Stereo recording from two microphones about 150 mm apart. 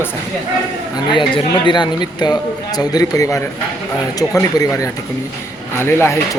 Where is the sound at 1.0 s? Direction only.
30° left (ahead or behind).